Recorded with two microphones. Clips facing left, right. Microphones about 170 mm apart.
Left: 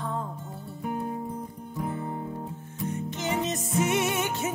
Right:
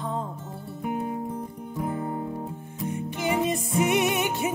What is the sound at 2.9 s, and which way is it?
Music, 10° right (ahead or behind).